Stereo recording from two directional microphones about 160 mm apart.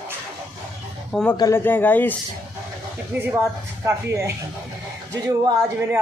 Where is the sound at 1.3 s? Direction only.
25° left (ahead or behind).